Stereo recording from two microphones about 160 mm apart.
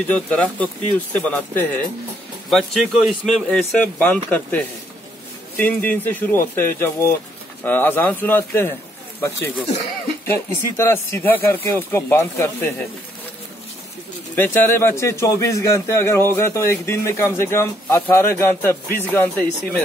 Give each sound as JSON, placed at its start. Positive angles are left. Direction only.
{"t": 0.1, "sound": "speech", "side_deg": 10}
{"t": 2.5, "sound": "a man's voice", "side_deg": 0}
{"t": 10.2, "sound": "speech", "side_deg": 15}
{"t": 14.3, "sound": "speech", "side_deg": 10}